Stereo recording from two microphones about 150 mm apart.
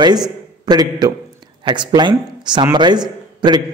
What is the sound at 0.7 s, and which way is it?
A man's voice, 25° right (ahead or behind).